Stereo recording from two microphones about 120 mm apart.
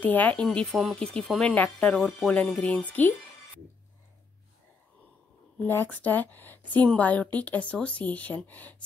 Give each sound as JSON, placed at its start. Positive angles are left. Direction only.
{"t": 0.0, "sound": "speech", "side_deg": 15}
{"t": 5.6, "sound": "speech", "side_deg": 15}